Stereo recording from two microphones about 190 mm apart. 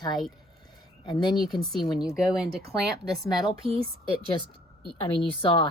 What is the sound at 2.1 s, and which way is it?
Speech, 5° right (ahead or behind).